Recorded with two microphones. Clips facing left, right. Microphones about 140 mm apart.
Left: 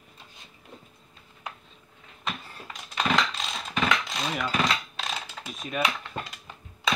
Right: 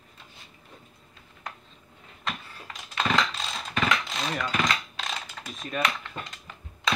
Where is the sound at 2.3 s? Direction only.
10° left (ahead or behind).